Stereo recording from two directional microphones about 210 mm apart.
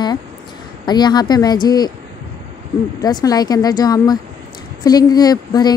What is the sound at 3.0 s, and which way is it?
A woman's voice, 20° left (ahead or behind).